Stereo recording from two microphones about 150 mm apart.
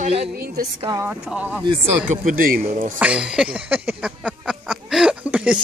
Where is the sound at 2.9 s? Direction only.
10° right (ahead or behind).